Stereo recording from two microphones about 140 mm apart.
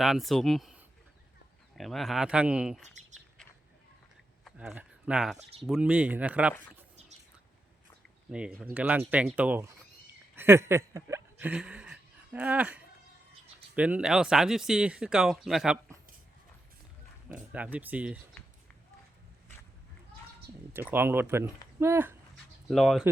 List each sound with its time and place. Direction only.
0.0 s speech: centre (ahead or behind)
4.5 s speech: 10° right (ahead or behind)
8.3 s speech: 10° right (ahead or behind)
10.3 s a sound: 15° right (ahead or behind)
13.7 s speech: 10° right (ahead or behind)
17.5 s speech: 10° right (ahead or behind)
20.7 s speech: 15° right (ahead or behind)
22.7 s speech: centre (ahead or behind)